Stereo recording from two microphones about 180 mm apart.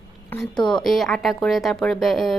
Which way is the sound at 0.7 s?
5° left (ahead or behind).